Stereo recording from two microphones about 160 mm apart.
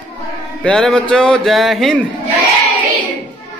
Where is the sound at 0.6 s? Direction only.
5° left (ahead or behind).